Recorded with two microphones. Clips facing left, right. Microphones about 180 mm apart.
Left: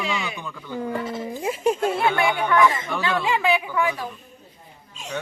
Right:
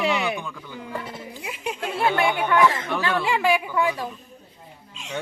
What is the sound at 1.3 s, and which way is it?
Speech, 40° left (ahead or behind).